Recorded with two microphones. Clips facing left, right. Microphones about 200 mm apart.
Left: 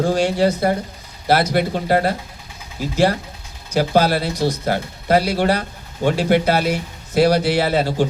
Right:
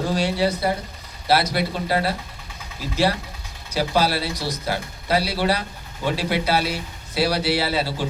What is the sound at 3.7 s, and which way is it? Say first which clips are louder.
Speech: left 5 dB; 50° left (ahead or behind).